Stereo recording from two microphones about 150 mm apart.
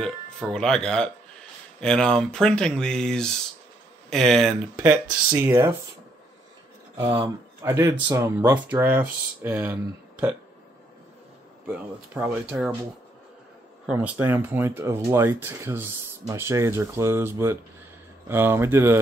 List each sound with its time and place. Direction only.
0.0 s speech: 5° left (ahead or behind)
4.7 s speech: 15° right (ahead or behind)
7.6 s speech: 15° right (ahead or behind)
11.6 s speech: 15° right (ahead or behind)
13.9 s speech: 15° right (ahead or behind)